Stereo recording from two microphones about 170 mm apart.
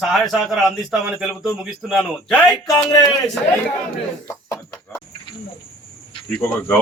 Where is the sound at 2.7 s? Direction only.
20° left (ahead or behind).